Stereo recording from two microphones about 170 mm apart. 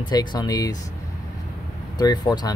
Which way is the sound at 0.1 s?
25° left (ahead or behind).